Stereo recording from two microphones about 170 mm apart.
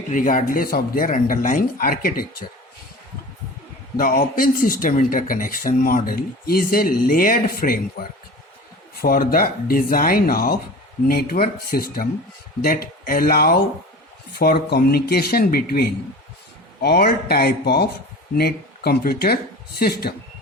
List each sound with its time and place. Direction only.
0.1 s speech: 50° left (ahead or behind)
3.9 s speech: 55° left (ahead or behind)
9.0 s speech: 60° left (ahead or behind)